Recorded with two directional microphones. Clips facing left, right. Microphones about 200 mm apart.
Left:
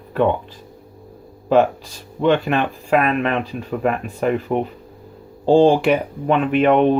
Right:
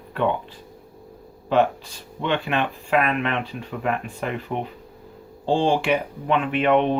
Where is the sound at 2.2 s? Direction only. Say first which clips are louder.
Left 7 dB; 40° left (ahead or behind).